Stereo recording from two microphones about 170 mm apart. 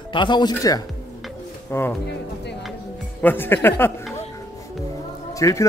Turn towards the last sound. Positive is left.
turn(degrees=20)  # may be behind; listen again after turning